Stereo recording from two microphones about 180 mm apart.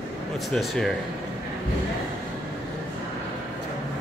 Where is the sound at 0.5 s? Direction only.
Centre (ahead or behind).